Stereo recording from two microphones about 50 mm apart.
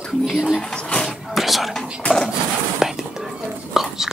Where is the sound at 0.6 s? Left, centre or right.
Centre.